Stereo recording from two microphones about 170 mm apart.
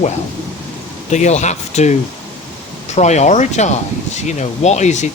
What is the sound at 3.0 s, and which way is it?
Speech, 45° left (ahead or behind).